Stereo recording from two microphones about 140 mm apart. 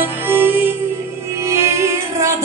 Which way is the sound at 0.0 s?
15° right (ahead or behind).